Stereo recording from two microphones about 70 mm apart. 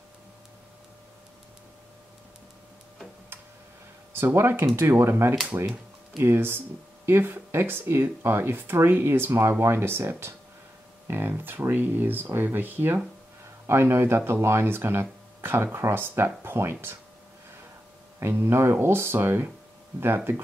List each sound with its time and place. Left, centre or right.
4.1 s speech: right
5.5 s speech: right
6.1 s speech: right
18.2 s speech: right